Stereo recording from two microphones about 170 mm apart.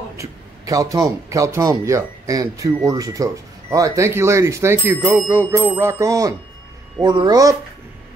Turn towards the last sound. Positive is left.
turn(degrees=-20)  # may be behind; listen again after turning